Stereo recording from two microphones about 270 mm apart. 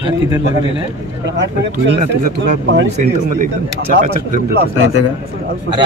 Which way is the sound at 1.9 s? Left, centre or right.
Right.